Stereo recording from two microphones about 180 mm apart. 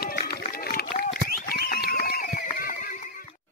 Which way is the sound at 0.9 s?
55° left (ahead or behind).